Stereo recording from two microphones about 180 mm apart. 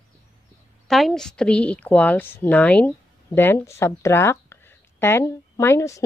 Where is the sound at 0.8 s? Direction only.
Centre (ahead or behind).